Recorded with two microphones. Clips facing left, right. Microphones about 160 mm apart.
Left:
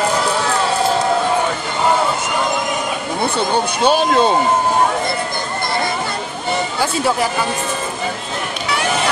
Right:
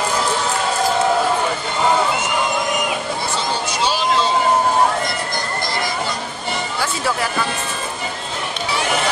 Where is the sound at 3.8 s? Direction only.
55° left (ahead or behind).